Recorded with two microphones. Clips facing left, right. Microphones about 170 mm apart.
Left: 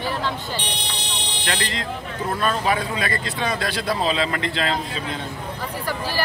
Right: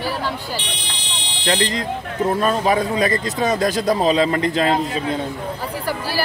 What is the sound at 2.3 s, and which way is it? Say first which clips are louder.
A man's voice: right 3 dB; 40° right (ahead or behind).